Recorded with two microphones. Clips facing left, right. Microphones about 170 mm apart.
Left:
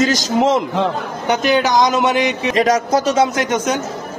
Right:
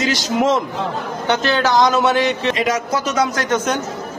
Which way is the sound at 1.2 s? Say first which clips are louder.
Left 2 dB; 15° left (ahead or behind).